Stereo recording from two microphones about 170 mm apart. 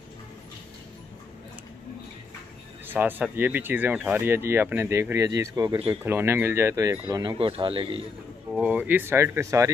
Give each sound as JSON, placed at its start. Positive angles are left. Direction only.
{"t": 2.9, "sound": "speech", "side_deg": -10}
{"t": 7.3, "sound": "speech", "side_deg": -30}
{"t": 8.5, "sound": "speech", "side_deg": -5}